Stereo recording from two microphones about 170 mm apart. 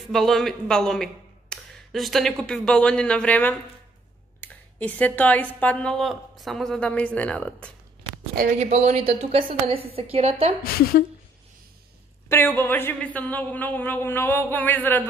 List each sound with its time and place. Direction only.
0.1 s a man's voice: centre (ahead or behind)
8.5 s a woman's voice: 40° right (ahead or behind)
10.6 s a woman's voice: 60° left (ahead or behind)
12.3 s speech: 15° left (ahead or behind)